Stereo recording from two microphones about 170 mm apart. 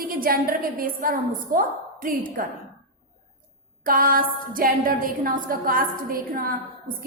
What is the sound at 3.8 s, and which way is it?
A woman's voice, 55° right (ahead or behind).